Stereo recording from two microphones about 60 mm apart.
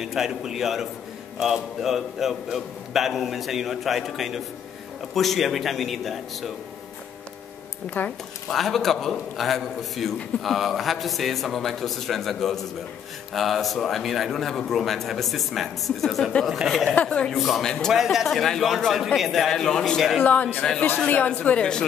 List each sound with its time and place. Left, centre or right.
0.0 s a man's voice: centre
8.0 s speech: left
8.5 s a man's voice: centre
16.9 s a man's voice: centre
17.3 s a man's voice: centre
20.2 s a man's voice: left
21.5 s speech: centre